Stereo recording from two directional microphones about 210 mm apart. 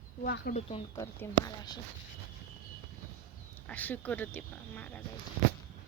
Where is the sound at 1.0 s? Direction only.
15° left (ahead or behind).